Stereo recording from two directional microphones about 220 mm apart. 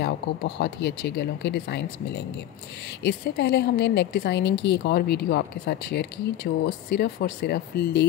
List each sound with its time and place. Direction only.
0.0 s a woman's voice: 50° left (ahead or behind)